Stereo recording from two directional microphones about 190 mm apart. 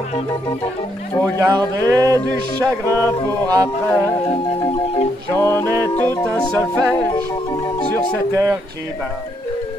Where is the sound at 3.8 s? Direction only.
10° left (ahead or behind).